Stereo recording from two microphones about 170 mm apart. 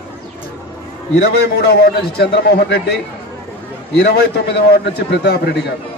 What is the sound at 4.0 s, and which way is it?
A man's voice, 70° left (ahead or behind).